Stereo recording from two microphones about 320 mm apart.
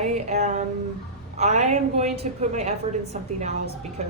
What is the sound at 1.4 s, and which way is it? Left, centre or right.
A woman's voice, right.